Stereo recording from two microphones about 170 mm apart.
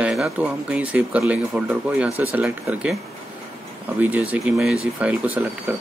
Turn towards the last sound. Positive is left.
turn(degrees=-10)  # may be behind; listen again after turning